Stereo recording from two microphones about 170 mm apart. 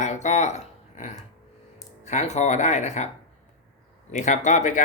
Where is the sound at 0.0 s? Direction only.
45° left (ahead or behind).